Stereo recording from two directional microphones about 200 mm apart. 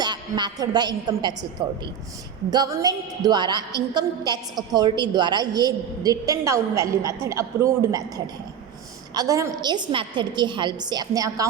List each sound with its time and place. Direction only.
0.0 s a woman's voice: 20° right (ahead or behind)